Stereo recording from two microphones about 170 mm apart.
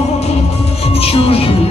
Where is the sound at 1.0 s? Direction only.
35° left (ahead or behind).